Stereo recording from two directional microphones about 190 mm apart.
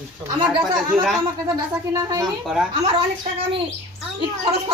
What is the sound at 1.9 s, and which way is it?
Speech, 15° right (ahead or behind).